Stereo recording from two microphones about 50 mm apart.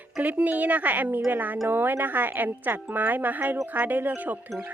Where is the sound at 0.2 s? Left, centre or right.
Right.